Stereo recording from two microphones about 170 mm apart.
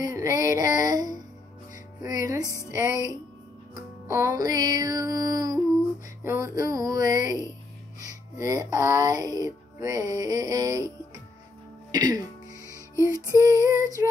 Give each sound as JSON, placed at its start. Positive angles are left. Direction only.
{"t": 0.0, "sound": "music", "side_deg": -20}
{"t": 2.4, "sound": "speech", "side_deg": 15}
{"t": 4.4, "sound": "music", "side_deg": -20}
{"t": 11.9, "sound": "speech", "side_deg": -25}
{"t": 12.6, "sound": "music", "side_deg": 20}
{"t": 13.3, "sound": "music", "side_deg": -20}